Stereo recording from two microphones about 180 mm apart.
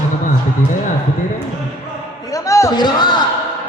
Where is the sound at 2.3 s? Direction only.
20° left (ahead or behind).